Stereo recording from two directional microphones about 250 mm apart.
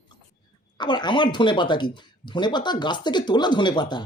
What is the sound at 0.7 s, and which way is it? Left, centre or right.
Speech, centre.